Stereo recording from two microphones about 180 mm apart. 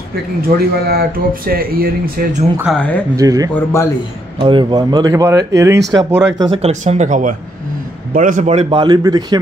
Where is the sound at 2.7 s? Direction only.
5° left (ahead or behind).